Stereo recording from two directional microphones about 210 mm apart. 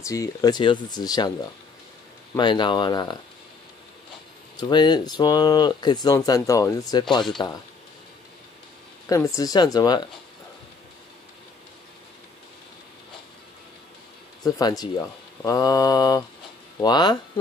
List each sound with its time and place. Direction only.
0.0 s speech: 15° left (ahead or behind)
2.3 s speech: 20° left (ahead or behind)
4.6 s speech: 20° left (ahead or behind)
9.1 s speech: 15° left (ahead or behind)
14.4 s speech: 20° left (ahead or behind)